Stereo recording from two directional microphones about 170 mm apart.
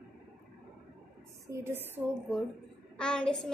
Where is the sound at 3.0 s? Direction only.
5° left (ahead or behind).